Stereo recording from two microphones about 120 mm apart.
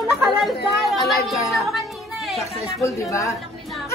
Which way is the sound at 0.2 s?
Centre (ahead or behind).